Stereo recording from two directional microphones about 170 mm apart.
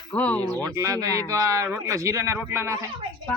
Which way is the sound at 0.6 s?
20° right (ahead or behind).